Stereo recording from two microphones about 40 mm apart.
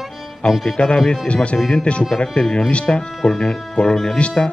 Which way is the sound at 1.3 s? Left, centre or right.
Left.